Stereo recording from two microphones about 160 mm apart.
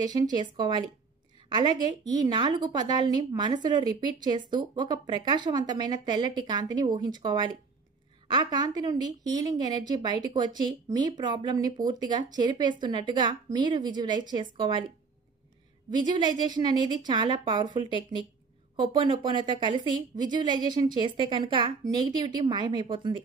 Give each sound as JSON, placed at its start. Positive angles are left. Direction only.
{"t": 0.0, "sound": "a woman's voice", "side_deg": -25}
{"t": 15.9, "sound": "a woman's voice", "side_deg": -30}